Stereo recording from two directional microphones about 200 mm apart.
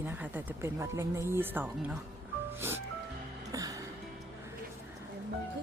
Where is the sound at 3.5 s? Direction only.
15° right (ahead or behind).